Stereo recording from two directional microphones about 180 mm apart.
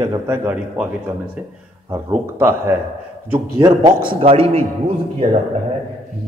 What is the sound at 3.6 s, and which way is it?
A man's voice, 25° right (ahead or behind).